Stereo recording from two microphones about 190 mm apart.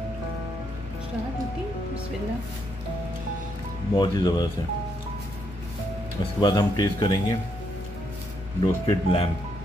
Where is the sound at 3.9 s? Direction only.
20° left (ahead or behind).